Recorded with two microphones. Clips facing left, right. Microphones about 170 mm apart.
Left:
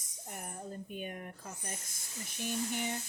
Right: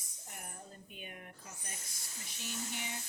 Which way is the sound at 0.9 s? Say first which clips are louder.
Left 8 dB; 45° left (ahead or behind).